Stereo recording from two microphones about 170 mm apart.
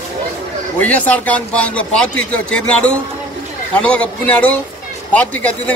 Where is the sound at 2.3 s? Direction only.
5° left (ahead or behind).